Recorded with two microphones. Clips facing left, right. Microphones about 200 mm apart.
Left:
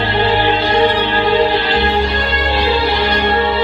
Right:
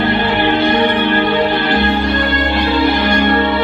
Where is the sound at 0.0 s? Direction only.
55° right (ahead or behind).